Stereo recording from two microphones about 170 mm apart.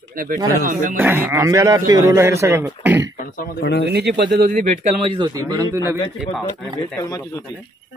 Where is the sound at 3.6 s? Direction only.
80° left.